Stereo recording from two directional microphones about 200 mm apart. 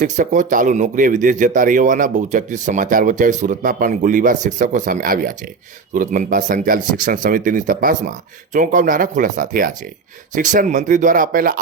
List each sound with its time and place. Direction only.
0.0 s a man's voice: 40° right (ahead or behind)